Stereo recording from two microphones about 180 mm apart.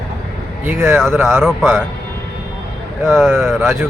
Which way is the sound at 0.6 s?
10° right (ahead or behind).